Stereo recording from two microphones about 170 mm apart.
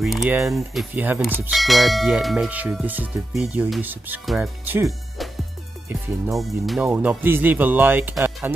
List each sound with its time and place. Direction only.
0.0 s bell: centre (ahead or behind)
4.3 s speech: 10° right (ahead or behind)
4.8 s music: centre (ahead or behind)
6.3 s speech: centre (ahead or behind)